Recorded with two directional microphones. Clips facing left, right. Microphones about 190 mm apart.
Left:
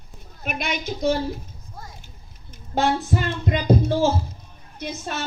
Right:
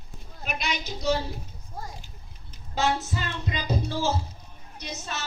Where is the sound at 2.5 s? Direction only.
55° left (ahead or behind).